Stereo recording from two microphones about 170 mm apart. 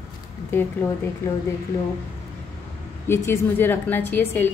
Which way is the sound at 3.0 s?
15° left (ahead or behind).